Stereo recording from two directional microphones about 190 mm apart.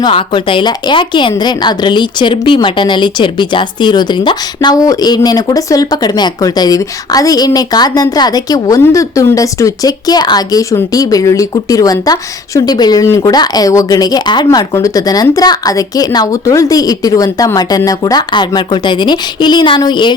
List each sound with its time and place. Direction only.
0.0 s a woman's voice: 25° left (ahead or behind)